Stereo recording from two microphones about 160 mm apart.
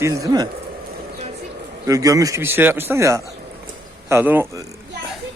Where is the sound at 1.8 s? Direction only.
20° right (ahead or behind).